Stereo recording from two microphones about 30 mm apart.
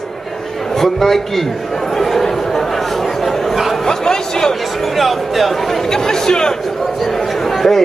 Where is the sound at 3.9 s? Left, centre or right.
Centre.